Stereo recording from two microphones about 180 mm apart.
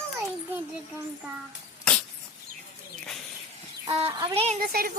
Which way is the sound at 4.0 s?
30° right (ahead or behind).